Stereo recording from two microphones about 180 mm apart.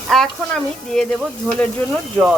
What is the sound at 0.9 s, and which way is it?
Speech, 5° left (ahead or behind).